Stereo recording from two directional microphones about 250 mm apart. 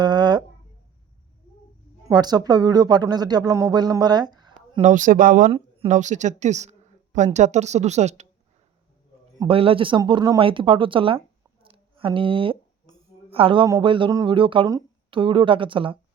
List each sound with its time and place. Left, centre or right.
0.0 s a sound: centre
2.0 s speech: centre
4.8 s a woman's voice: right
9.4 s speech: right
11.6 s a sound: right
13.3 s speech: right